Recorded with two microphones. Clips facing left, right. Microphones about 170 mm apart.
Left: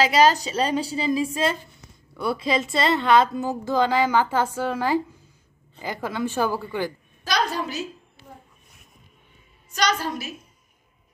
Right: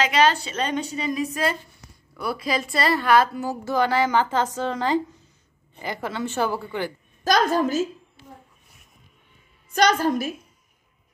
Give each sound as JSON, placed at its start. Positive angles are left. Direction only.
{"t": 0.0, "sound": "a woman's voice", "side_deg": 35}
{"t": 6.0, "sound": "a woman's voice", "side_deg": 15}
{"t": 7.2, "sound": "a woman's voice", "side_deg": -45}
{"t": 9.7, "sound": "a woman's voice", "side_deg": -55}